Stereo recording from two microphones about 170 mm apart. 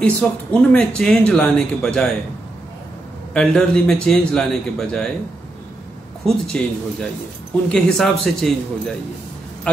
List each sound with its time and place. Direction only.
0.0 s speech: 5° left (ahead or behind)
3.3 s speech: 5° left (ahead or behind)
6.2 s speech: 5° left (ahead or behind)